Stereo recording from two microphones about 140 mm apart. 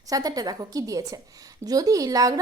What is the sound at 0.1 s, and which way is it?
A woman's voice, 25° right (ahead or behind).